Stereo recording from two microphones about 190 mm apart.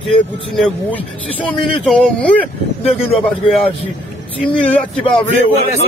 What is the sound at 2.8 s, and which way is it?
Speech, 30° left (ahead or behind).